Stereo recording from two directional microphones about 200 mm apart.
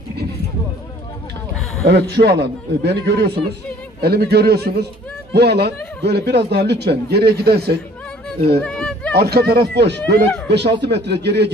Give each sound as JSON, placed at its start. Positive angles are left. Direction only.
{"t": 1.9, "sound": "speech", "side_deg": -55}
{"t": 8.5, "sound": "a sound", "side_deg": 5}
{"t": 9.1, "sound": "speech", "side_deg": -50}